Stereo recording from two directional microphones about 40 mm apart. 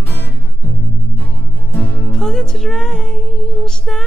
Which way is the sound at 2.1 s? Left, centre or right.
Centre.